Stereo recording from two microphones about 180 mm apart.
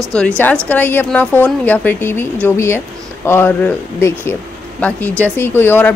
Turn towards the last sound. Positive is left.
turn(degrees=10)  # may be behind; listen again after turning